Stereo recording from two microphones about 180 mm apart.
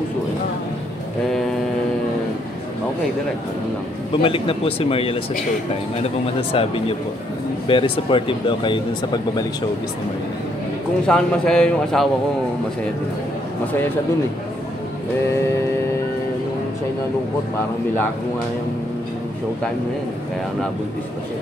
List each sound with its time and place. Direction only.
4.1 s speech: 30° left (ahead or behind)
6.5 s speech: 30° left (ahead or behind)
11.1 s a man's voice: 5° left (ahead or behind)